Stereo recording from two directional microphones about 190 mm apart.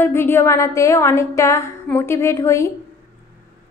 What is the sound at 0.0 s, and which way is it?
A woman's voice, 10° left (ahead or behind).